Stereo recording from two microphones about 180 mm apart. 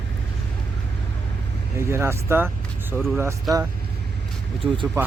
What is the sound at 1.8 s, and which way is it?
Speech, 15° right (ahead or behind).